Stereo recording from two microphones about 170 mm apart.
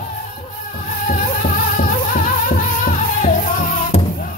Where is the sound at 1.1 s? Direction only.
50° left (ahead or behind).